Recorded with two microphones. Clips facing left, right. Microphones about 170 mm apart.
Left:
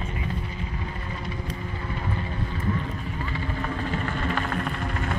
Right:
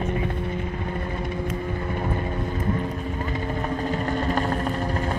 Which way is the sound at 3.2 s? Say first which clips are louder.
Right 2 dB; 40° right (ahead or behind).